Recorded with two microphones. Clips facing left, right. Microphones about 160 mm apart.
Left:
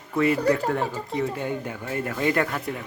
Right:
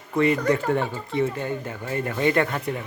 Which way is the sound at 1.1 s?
10° left (ahead or behind).